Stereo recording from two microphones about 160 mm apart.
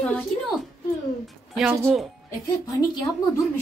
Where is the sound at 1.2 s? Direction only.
Centre (ahead or behind).